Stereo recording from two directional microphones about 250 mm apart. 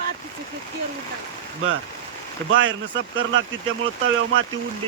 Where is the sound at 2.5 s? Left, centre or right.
Right.